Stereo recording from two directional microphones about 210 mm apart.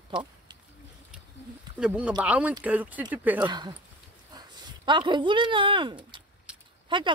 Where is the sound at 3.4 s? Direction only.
20° right (ahead or behind).